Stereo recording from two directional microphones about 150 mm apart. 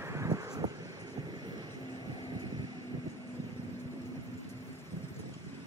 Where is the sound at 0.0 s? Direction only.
20° right (ahead or behind).